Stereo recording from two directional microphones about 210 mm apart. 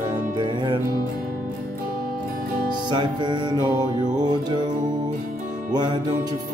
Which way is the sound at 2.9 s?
20° right (ahead or behind).